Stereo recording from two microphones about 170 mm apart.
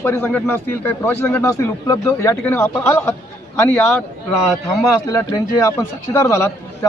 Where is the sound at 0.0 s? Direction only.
15° left (ahead or behind).